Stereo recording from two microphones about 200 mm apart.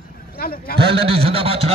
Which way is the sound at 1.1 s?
30° right (ahead or behind).